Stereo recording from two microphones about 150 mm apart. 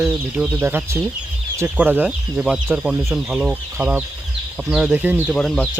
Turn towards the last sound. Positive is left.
turn(degrees=5)  # may be behind; listen again after turning